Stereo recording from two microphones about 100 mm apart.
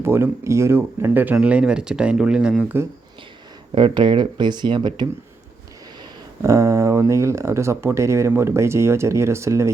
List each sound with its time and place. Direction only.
0.0 s speech: 25° right (ahead or behind); by 2.6 s 5° right (ahead or behind)
3.8 s speech: 55° right (ahead or behind)
6.4 s speech: 30° right (ahead or behind)